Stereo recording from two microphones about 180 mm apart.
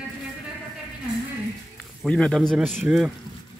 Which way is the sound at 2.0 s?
5° left (ahead or behind).